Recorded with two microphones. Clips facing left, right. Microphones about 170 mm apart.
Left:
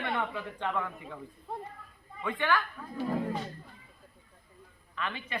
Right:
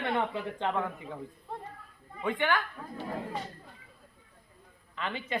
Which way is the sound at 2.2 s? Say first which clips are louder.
Right 1 dB; 20° right (ahead or behind).